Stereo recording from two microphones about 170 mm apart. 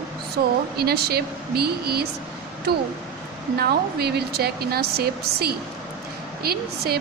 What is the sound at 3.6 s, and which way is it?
A woman's voice, 65° right (ahead or behind).